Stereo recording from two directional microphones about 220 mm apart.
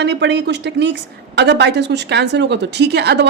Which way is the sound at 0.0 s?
50° right (ahead or behind).